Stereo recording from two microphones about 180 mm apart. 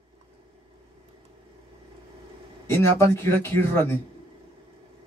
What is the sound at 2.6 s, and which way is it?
Speech, 15° left (ahead or behind).